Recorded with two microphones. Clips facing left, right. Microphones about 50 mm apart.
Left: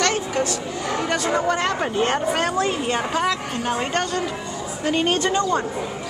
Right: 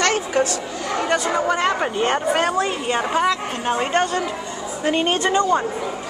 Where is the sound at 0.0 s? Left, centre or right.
Right.